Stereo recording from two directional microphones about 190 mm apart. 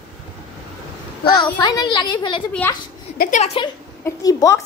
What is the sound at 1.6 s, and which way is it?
Speech, 20° left (ahead or behind).